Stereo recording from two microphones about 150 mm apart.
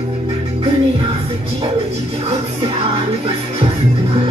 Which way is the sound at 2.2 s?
40° right (ahead or behind).